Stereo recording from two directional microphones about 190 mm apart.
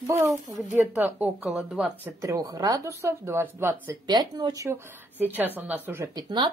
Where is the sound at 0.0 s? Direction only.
15° right (ahead or behind).